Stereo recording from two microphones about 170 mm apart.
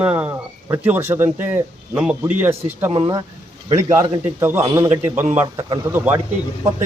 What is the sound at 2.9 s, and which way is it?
Speech, 30° right (ahead or behind).